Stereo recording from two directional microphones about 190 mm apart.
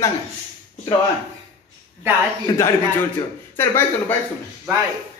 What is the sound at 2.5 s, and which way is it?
Speech, 20° left (ahead or behind).